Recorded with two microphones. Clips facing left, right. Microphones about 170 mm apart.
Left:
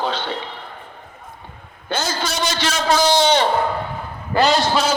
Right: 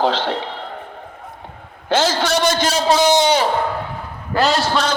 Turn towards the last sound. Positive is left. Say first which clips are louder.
# left 1 dB
turn(degrees=5)  # may be behind; listen again after turning